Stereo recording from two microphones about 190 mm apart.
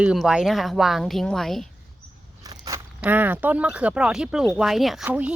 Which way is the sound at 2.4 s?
20° right (ahead or behind).